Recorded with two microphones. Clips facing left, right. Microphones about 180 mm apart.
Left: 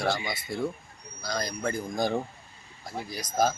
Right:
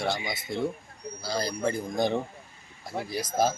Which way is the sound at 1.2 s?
30° right (ahead or behind).